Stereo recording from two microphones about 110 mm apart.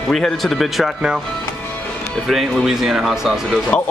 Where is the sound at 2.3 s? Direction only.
Centre (ahead or behind).